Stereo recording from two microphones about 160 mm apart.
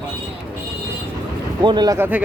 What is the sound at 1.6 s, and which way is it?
Speech, 25° right (ahead or behind).